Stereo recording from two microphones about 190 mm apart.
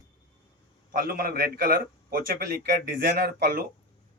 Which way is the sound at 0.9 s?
50° right (ahead or behind).